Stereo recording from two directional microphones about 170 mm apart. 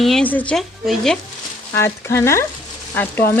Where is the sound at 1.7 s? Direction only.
15° left (ahead or behind).